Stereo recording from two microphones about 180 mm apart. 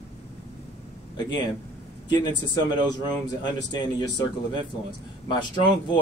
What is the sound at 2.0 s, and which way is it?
Speech, 25° left (ahead or behind).